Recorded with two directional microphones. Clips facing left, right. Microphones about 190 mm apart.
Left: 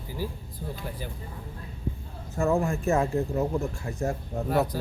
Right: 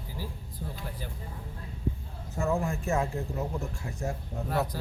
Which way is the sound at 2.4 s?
55° left (ahead or behind).